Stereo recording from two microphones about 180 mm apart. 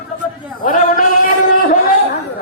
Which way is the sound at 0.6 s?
45° left (ahead or behind).